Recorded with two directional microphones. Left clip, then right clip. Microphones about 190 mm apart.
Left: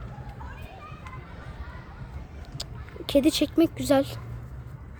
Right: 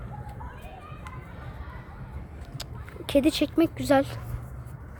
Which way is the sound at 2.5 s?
10° left (ahead or behind).